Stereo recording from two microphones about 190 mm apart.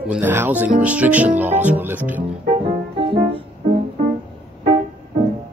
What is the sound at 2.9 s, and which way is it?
Music, 30° right (ahead or behind).